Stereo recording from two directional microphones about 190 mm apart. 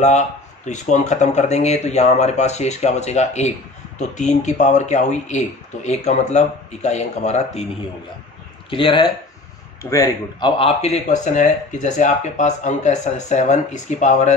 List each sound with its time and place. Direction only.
0.7 s speech: 40° left (ahead or behind)
8.6 s speech: 25° left (ahead or behind)